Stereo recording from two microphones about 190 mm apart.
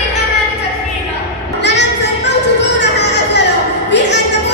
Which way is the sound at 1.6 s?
65° left (ahead or behind).